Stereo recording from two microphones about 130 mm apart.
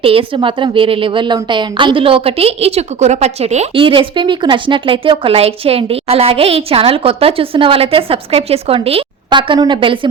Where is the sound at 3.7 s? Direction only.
40° right (ahead or behind).